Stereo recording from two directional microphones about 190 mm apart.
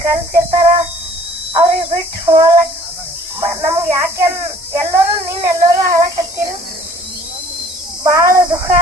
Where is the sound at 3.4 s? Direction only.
15° right (ahead or behind).